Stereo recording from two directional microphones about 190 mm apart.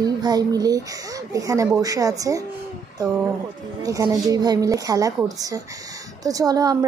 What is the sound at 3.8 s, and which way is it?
Speech, 20° right (ahead or behind).